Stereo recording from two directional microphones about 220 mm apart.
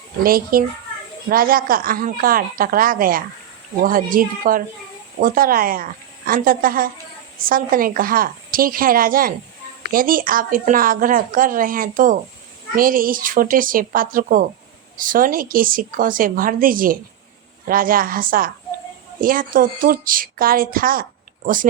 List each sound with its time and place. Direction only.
0.2 s speech: 40° right (ahead or behind)